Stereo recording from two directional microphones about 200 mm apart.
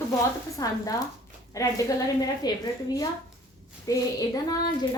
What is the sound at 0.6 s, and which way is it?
A woman's voice, 15° left (ahead or behind).